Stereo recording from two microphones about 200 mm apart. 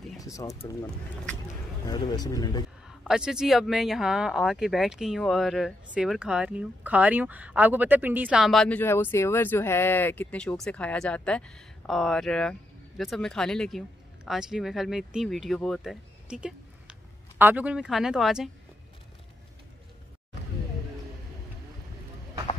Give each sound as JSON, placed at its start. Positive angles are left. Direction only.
{"t": 0.2, "sound": "speech", "side_deg": 15}
{"t": 1.9, "sound": "speech", "side_deg": 20}
{"t": 3.0, "sound": "speech", "side_deg": -5}